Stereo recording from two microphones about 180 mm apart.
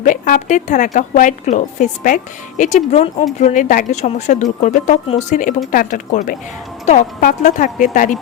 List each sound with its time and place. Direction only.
0.0 s a woman's voice: 45° left (ahead or behind)